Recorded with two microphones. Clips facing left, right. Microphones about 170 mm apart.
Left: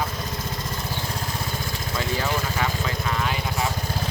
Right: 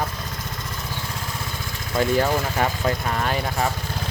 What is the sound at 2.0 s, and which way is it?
Speech, 45° right (ahead or behind).